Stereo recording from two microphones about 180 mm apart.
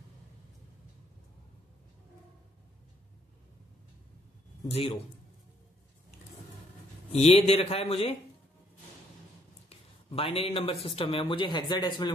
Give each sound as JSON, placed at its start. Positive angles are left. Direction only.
{"t": 4.6, "sound": "speech", "side_deg": 35}
{"t": 7.1, "sound": "speech", "side_deg": 35}
{"t": 9.7, "sound": "a man's voice", "side_deg": 30}